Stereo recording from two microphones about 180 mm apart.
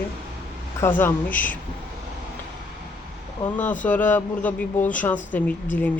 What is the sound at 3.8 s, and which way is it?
Speech, 10° left (ahead or behind).